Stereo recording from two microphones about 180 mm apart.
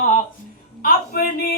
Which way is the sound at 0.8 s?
55° left (ahead or behind).